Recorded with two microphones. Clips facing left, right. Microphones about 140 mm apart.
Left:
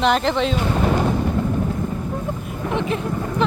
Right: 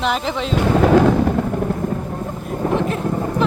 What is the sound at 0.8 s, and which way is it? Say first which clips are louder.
Wind noise: right 8 dB; 90° right.